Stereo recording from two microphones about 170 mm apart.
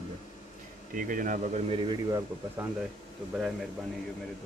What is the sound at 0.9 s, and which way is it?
Speech, 50° right (ahead or behind).